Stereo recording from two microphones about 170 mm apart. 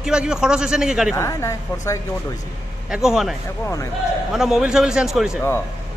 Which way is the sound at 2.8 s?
5° right (ahead or behind).